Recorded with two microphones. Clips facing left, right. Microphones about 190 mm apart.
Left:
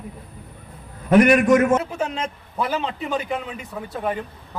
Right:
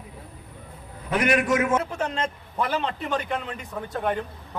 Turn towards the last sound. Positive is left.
turn(degrees=5)  # may be behind; listen again after turning